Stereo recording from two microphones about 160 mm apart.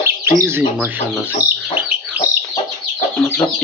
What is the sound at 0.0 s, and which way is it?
Speech, 15° right (ahead or behind).